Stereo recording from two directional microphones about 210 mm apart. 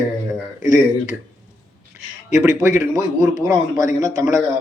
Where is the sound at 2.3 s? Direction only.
15° right (ahead or behind).